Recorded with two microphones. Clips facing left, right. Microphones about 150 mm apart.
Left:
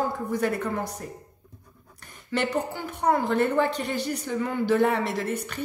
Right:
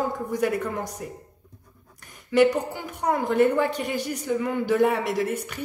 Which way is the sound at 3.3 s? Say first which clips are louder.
Right 2 dB; 10° right (ahead or behind).